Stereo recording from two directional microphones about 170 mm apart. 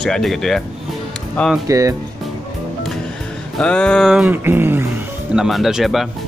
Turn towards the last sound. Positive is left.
turn(degrees=0)  # may be behind; listen again after turning